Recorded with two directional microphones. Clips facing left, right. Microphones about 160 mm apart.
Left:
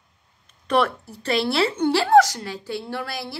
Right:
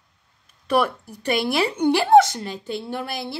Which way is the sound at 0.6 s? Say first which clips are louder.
Even; 10° right (ahead or behind).